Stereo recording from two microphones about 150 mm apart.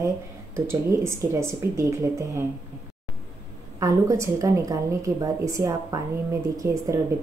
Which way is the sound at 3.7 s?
20° right (ahead or behind).